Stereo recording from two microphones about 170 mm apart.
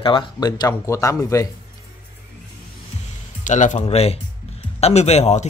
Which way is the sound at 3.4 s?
45° left (ahead or behind).